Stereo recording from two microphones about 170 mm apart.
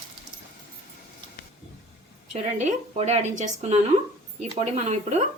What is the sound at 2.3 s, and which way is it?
Speech, 40° right (ahead or behind).